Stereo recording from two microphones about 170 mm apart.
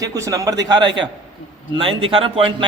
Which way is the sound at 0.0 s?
20° right (ahead or behind).